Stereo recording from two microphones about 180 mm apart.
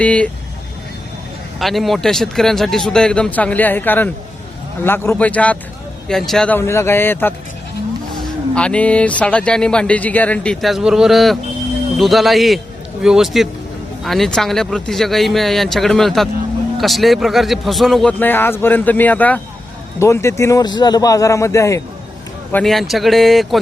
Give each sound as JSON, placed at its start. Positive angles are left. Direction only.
{"t": 0.0, "sound": "a man's voice", "side_deg": 5}
{"t": 1.5, "sound": "a man's voice", "side_deg": 0}
{"t": 22.5, "sound": "speech", "side_deg": 0}